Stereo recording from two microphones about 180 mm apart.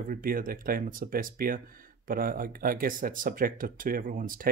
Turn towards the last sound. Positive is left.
turn(degrees=-50)  # may be behind; listen again after turning